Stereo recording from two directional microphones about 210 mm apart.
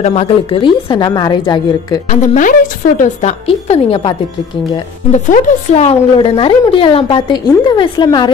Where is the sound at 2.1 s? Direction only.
35° left (ahead or behind).